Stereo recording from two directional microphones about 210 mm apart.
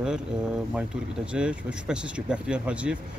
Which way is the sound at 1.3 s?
5° right (ahead or behind).